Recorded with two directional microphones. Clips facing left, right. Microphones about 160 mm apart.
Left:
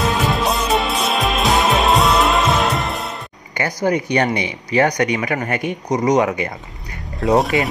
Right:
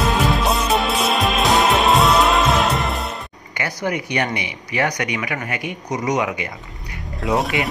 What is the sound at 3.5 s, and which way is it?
Speech, 40° left (ahead or behind).